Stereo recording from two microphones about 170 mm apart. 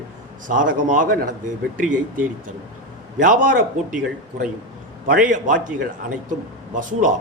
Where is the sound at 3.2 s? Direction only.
50° right (ahead or behind).